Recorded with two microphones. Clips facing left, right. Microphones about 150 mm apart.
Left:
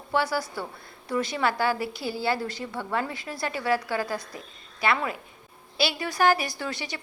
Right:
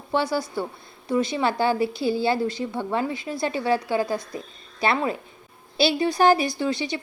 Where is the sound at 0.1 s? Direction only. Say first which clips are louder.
Right 3 dB; 20° right (ahead or behind).